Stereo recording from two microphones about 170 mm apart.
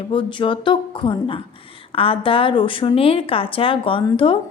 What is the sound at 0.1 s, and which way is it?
A woman's voice, 30° left (ahead or behind).